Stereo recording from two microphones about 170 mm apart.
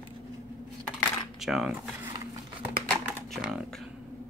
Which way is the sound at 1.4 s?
5° right (ahead or behind).